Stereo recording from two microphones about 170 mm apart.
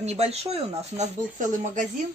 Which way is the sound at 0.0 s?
40° right (ahead or behind).